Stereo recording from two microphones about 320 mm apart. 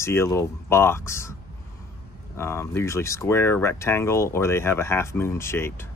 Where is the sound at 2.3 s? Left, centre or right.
Centre.